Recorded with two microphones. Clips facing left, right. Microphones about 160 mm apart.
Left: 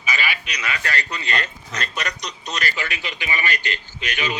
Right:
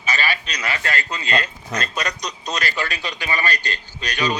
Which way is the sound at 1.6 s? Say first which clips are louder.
Right 3 dB; 40° right (ahead or behind).